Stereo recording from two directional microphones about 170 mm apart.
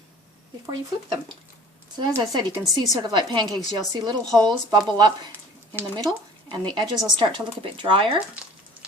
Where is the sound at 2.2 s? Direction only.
25° right (ahead or behind).